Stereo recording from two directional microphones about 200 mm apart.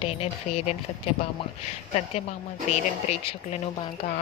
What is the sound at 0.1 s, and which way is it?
Speech, 30° left (ahead or behind).